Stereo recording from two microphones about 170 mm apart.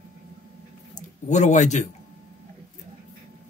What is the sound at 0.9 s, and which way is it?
Speech, 45° left (ahead or behind).